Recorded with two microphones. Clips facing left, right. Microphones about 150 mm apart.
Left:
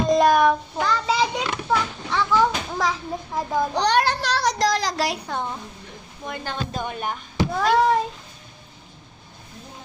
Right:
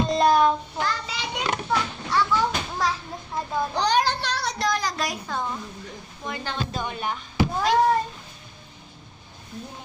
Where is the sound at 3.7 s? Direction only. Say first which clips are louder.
Left 1 dB; 65° left (ahead or behind).